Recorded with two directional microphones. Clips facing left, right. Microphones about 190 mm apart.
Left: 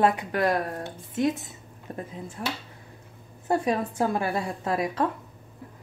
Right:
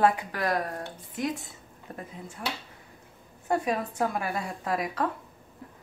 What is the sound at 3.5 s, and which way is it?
A woman's voice, 30° left (ahead or behind).